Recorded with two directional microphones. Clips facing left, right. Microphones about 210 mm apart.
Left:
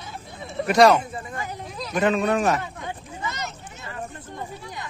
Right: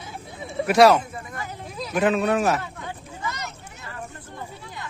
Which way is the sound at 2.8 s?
20° left (ahead or behind).